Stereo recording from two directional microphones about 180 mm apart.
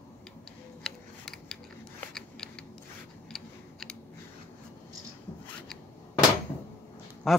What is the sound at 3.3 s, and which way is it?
Typing, 5° left (ahead or behind).